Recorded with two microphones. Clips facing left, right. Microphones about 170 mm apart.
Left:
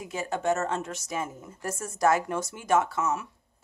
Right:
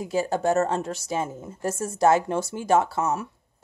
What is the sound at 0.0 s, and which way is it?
A woman's voice, 35° right (ahead or behind).